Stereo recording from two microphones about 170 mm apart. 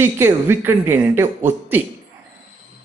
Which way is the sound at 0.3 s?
15° right (ahead or behind).